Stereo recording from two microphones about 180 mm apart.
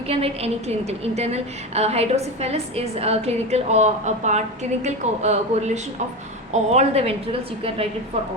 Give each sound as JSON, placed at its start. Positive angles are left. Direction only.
{"t": 0.1, "sound": "a woman's voice", "side_deg": -35}